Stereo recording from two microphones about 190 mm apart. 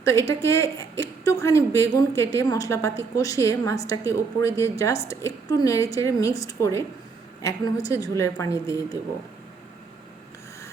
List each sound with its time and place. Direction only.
0.0 s a woman's voice: 15° left (ahead or behind)